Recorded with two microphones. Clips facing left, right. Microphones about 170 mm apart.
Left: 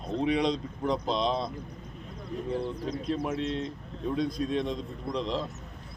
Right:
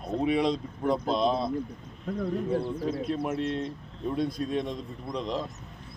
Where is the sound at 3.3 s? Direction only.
50° right (ahead or behind).